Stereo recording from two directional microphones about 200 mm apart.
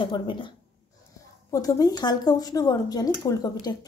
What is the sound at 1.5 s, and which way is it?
Speech, 15° left (ahead or behind).